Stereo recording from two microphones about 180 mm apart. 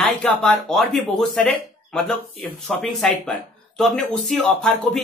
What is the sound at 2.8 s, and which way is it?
Speech, 5° left (ahead or behind).